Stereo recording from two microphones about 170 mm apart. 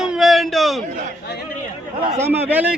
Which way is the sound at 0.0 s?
Centre (ahead or behind).